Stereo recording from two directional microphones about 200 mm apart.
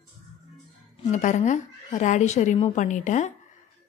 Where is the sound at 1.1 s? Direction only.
35° left (ahead or behind).